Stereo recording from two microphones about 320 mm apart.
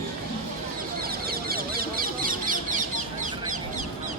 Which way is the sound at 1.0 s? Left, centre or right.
Right.